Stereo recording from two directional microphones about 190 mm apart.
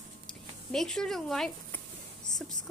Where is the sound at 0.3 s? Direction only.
5° left (ahead or behind).